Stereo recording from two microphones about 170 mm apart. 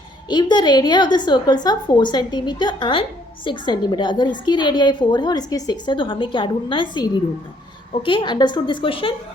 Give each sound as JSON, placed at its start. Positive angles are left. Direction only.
{"t": 0.3, "sound": "a woman's voice", "side_deg": 25}